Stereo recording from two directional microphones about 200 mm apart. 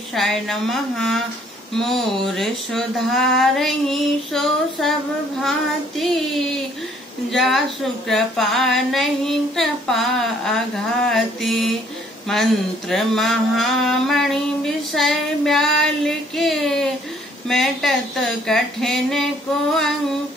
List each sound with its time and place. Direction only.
0.1 s speech: centre (ahead or behind)